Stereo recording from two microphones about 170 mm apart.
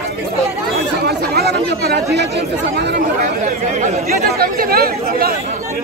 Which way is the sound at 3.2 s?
50° right (ahead or behind).